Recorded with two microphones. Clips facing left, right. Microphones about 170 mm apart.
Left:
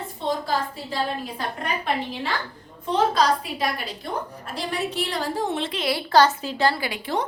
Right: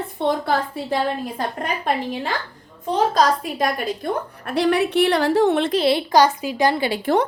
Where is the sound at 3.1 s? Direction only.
45° right (ahead or behind).